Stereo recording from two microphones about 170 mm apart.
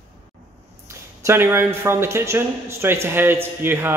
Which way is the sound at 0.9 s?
15° right (ahead or behind).